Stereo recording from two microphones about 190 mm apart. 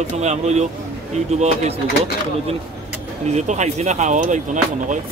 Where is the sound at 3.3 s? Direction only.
40° right (ahead or behind).